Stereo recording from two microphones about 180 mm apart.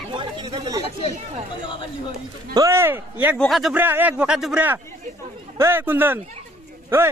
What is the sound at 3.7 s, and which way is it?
Speech, 10° right (ahead or behind).